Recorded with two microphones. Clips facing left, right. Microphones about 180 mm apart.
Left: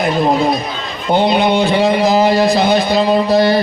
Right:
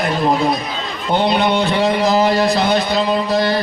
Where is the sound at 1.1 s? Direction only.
5° left (ahead or behind).